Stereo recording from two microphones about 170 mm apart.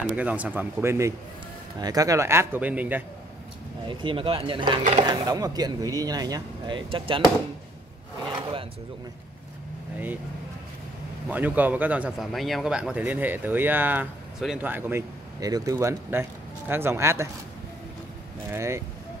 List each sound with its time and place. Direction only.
0.1 s a man's voice: 10° right (ahead or behind)
3.8 s speech: 30° right (ahead or behind)
11.2 s a man's voice: 10° right (ahead or behind)
18.5 s a man's voice: 15° right (ahead or behind)